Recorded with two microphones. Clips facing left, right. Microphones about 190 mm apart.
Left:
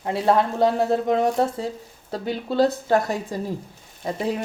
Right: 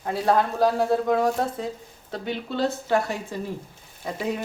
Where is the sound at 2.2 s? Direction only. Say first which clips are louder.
Left 5 dB; 35° left (ahead or behind).